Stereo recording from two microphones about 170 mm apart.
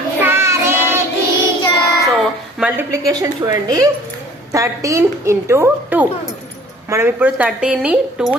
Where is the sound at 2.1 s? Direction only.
5° right (ahead or behind).